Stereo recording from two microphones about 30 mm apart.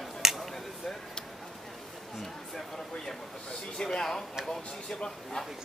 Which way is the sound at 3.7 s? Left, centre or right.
Left.